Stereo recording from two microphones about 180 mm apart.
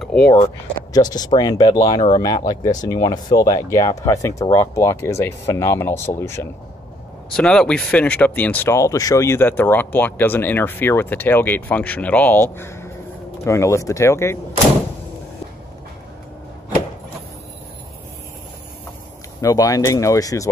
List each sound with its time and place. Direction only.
0.0 s a sound: 5° left (ahead or behind)
1.1 s speech: 20° left (ahead or behind)
19.4 s speech: 20° left (ahead or behind)